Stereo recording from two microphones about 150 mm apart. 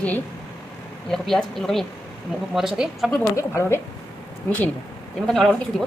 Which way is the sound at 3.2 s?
20° left (ahead or behind).